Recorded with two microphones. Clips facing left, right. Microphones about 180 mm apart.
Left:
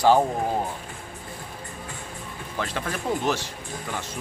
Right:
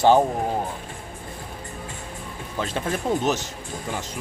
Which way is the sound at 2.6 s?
25° right (ahead or behind).